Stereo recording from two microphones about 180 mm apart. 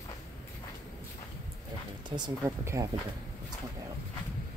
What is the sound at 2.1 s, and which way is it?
Speech, 15° right (ahead or behind).